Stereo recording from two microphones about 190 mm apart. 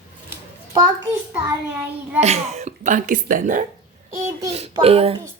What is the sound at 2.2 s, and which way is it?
A woman's voice, 35° right (ahead or behind).